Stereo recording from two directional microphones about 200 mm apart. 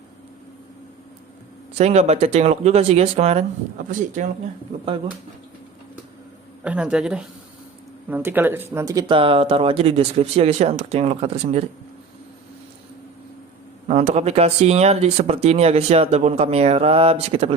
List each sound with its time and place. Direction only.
1.8 s speech: 35° right (ahead or behind)
6.7 s speech: 5° right (ahead or behind); by 11.6 s 30° right (ahead or behind)
13.8 s speech: 35° right (ahead or behind)